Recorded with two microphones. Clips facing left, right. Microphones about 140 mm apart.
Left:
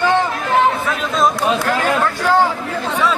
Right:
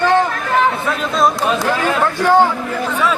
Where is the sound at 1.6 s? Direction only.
15° right (ahead or behind).